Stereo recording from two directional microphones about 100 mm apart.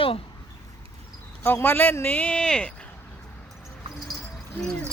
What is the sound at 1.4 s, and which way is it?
Speech, 20° left (ahead or behind).